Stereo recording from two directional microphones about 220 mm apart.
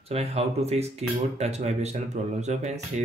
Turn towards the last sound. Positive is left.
turn(degrees=-30)  # may be behind; listen again after turning